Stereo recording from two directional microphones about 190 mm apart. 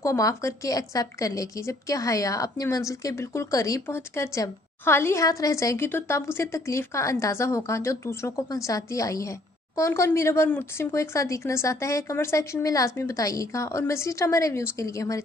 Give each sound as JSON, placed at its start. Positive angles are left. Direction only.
{"t": 0.0, "sound": "a woman's voice", "side_deg": 15}